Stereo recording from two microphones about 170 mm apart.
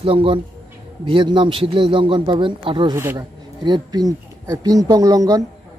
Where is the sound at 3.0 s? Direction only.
15° right (ahead or behind).